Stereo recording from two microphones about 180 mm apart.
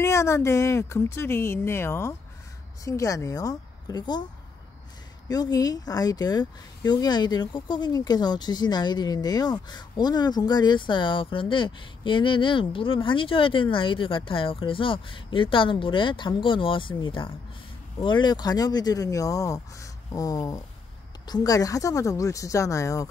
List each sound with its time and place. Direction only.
0.0 s a woman's voice: 15° left (ahead or behind)
5.3 s a woman's voice: 20° left (ahead or behind)